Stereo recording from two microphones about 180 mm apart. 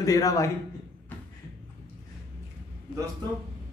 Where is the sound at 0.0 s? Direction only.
20° left (ahead or behind).